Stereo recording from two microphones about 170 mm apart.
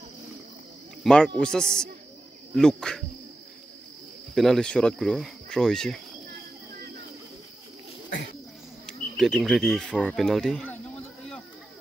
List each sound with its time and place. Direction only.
1.0 s speech: 5° left (ahead or behind)
4.4 s speech: 5° left (ahead or behind)
8.8 s speech: centre (ahead or behind)